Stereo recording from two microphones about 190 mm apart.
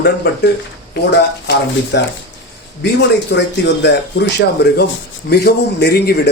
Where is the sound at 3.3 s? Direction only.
65° left (ahead or behind).